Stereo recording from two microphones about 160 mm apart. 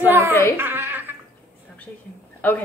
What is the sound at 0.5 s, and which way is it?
Giggle, 15° right (ahead or behind).